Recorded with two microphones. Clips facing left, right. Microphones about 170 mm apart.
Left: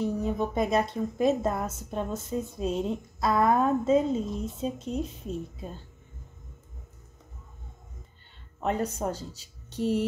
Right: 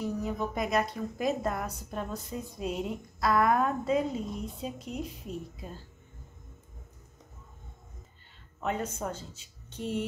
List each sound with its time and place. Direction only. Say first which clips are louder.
0.0 s speech: left 4 dB; 25° left (ahead or behind)
8.6 s speech: left 4 dB; 35° left (ahead or behind)